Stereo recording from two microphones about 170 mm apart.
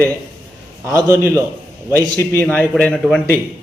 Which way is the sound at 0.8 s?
15° right (ahead or behind).